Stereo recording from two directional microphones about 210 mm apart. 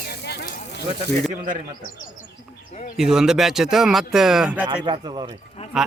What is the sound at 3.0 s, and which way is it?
Speech, 5° right (ahead or behind).